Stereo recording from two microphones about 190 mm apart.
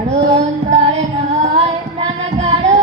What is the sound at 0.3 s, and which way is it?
Female singing, 35° right (ahead or behind).